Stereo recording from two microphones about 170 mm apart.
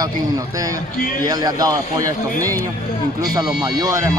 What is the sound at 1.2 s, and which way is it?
Speech, 20° right (ahead or behind).